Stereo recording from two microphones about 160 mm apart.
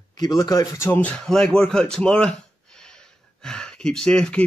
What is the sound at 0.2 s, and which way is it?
Speech, 25° left (ahead or behind).